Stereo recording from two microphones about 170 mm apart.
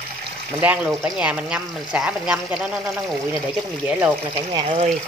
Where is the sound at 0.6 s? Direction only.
10° right (ahead or behind).